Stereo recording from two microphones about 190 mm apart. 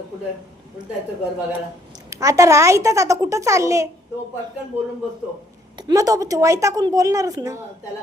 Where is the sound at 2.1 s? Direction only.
15° right (ahead or behind).